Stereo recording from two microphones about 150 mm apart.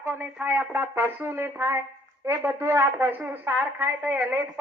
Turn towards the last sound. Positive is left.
turn(degrees=-10)  # may be behind; listen again after turning